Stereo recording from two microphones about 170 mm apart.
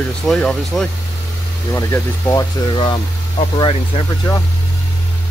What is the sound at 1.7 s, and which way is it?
Speech, 20° left (ahead or behind).